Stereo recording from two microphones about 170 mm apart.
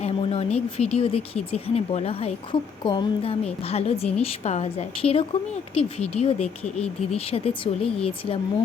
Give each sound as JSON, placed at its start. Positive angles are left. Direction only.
{"t": 0.0, "sound": "a sound", "side_deg": 35}
{"t": 0.8, "sound": "speech", "side_deg": 35}
{"t": 6.6, "sound": "speech", "side_deg": 5}
{"t": 7.2, "sound": "speech", "side_deg": 35}